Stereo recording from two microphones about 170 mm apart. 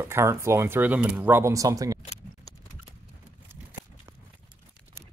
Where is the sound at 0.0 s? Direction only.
15° right (ahead or behind).